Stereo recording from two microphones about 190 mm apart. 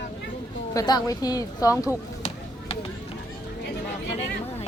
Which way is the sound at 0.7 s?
20° left (ahead or behind).